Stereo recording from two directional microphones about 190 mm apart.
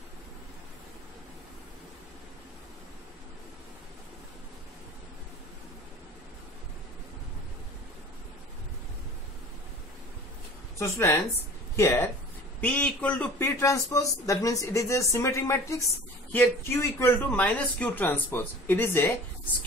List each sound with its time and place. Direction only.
10.8 s a man's voice: 15° left (ahead or behind)